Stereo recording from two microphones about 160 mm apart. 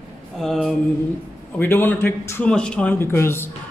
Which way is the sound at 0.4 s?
Centre (ahead or behind).